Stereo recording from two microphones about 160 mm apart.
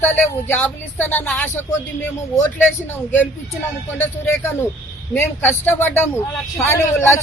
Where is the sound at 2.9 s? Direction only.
10° left (ahead or behind).